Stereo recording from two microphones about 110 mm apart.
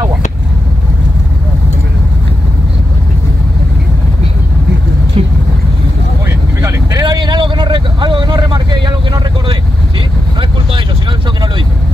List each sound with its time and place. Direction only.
5.2 s boat: 60° right (ahead or behind)
6.2 s vehicle: 30° right (ahead or behind)